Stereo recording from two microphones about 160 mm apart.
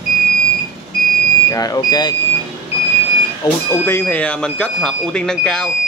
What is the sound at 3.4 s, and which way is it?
Speech, 15° left (ahead or behind).